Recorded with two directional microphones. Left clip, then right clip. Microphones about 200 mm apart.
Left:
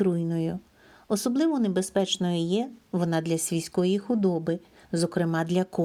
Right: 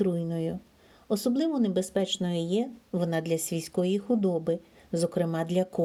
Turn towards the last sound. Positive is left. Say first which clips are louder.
# left 1 dB
turn(degrees=15)  # may be behind; listen again after turning